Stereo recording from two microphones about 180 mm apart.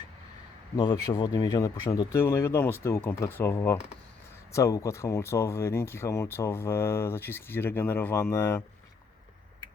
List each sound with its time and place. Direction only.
0.8 s speech: 20° left (ahead or behind)